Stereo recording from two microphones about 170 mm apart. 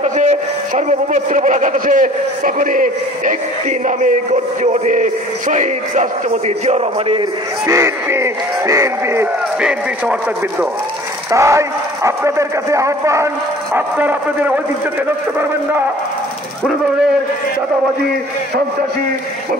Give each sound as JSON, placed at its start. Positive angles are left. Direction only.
{"t": 0.0, "sound": "a man's voice", "side_deg": -40}
{"t": 7.6, "sound": "a man's voice", "side_deg": -15}
{"t": 9.6, "sound": "a man's voice", "side_deg": -5}
{"t": 11.3, "sound": "a man's voice", "side_deg": -15}